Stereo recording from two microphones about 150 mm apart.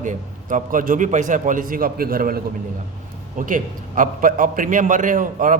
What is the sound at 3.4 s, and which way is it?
A man's voice, 65° right (ahead or behind).